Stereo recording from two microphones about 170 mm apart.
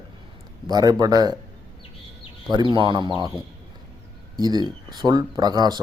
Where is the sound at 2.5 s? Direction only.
25° right (ahead or behind).